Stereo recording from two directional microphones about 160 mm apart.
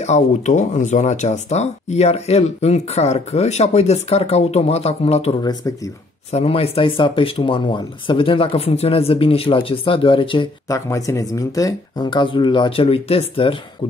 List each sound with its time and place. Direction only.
0.0 s speech: 45° left (ahead or behind)
5.4 s speech: 25° left (ahead or behind)
6.3 s speech: 40° left (ahead or behind)
10.7 s speech: 20° left (ahead or behind); by 13.6 s 35° left (ahead or behind)